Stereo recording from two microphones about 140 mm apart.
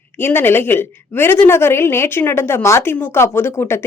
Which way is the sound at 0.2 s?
15° left (ahead or behind).